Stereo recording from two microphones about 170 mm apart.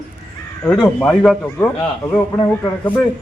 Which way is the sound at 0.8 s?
10° left (ahead or behind).